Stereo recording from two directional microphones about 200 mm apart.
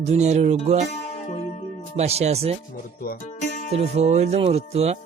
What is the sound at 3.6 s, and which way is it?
Speech, 35° right (ahead or behind).